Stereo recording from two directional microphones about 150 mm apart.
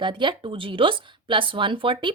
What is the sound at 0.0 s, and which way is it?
Speech, 35° right (ahead or behind).